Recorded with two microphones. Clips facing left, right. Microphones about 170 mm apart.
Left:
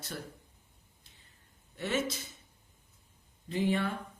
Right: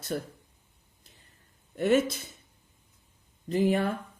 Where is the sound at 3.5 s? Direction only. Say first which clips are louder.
Right 5 dB; 40° right (ahead or behind).